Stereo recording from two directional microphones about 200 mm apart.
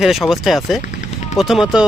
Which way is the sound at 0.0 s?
Centre (ahead or behind).